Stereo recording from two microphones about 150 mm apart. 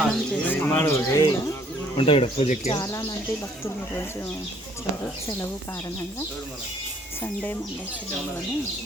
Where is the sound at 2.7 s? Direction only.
20° left (ahead or behind).